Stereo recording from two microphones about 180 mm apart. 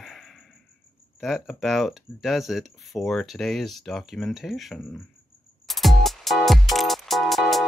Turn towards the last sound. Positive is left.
turn(degrees=0)  # may be behind; listen again after turning